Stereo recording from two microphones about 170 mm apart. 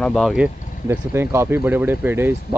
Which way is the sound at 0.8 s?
15° right (ahead or behind).